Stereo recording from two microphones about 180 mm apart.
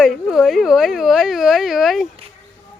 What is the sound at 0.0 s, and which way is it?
Speech, centre (ahead or behind).